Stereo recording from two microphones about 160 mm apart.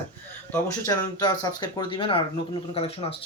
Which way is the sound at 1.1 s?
25° left (ahead or behind).